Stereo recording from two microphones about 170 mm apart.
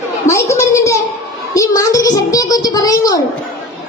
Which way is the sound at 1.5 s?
20° left (ahead or behind).